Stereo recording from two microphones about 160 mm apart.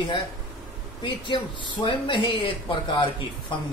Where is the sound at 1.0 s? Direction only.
30° left (ahead or behind).